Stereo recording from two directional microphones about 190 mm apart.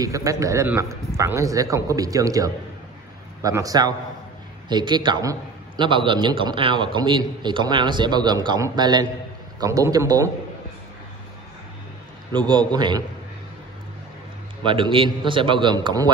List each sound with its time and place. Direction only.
0.0 s a man's voice: 15° right (ahead or behind)
12.3 s a man's voice: 25° right (ahead or behind)
14.7 s a man's voice: 25° right (ahead or behind)